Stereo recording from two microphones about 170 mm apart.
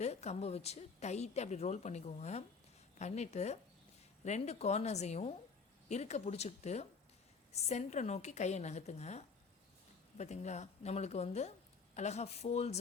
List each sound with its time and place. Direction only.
0.0 s a woman's voice: 40° left (ahead or behind)